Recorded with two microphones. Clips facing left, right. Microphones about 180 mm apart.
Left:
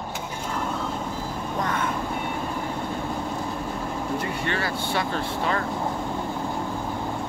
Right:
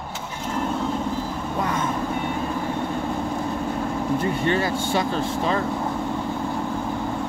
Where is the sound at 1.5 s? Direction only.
10° right (ahead or behind).